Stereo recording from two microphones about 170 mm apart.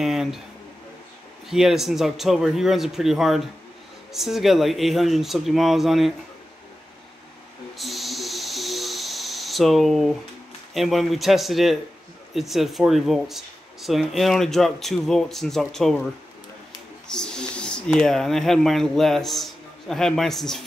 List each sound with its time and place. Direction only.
0.0 s speech: centre (ahead or behind)
1.5 s speech: centre (ahead or behind)
7.7 s a sound: centre (ahead or behind)
10.7 s speech: centre (ahead or behind)
17.1 s speech: 5° left (ahead or behind)